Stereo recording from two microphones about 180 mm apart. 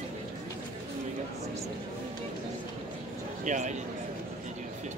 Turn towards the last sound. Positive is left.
turn(degrees=-45)  # may be behind; listen again after turning